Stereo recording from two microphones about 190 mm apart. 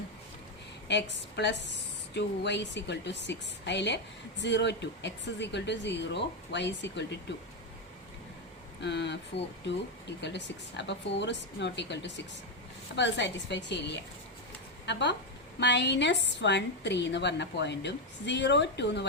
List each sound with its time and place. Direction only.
0.9 s speech: 65° left (ahead or behind)
8.8 s a woman's voice: 65° left (ahead or behind)